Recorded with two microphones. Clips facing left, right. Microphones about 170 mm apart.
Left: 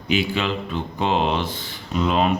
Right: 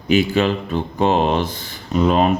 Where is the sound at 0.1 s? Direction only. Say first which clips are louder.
Right 6 dB; 45° right (ahead or behind).